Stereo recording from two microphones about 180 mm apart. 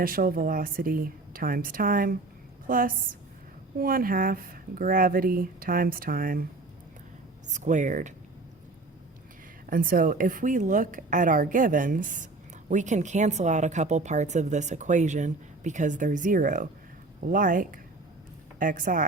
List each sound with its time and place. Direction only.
0.0 s a woman's voice: 55° right (ahead or behind)
7.4 s a woman's voice: 45° right (ahead or behind)
9.6 s a woman's voice: 50° right (ahead or behind)